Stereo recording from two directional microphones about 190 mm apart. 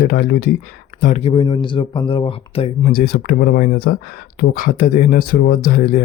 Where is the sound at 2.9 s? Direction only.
50° left (ahead or behind).